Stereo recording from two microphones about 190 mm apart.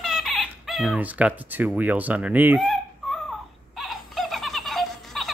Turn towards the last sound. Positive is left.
turn(degrees=0)  # may be behind; listen again after turning